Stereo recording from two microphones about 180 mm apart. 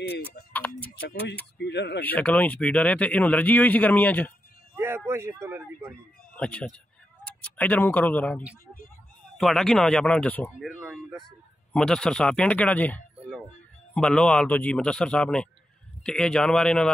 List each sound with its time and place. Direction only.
0.5 s tick-tock: 10° left (ahead or behind)
1.6 s speech: 70° left (ahead or behind)
2.0 s speech: 10° left (ahead or behind)
4.7 s a sound: 15° right (ahead or behind)
6.3 s a man's voice: 5° left (ahead or behind)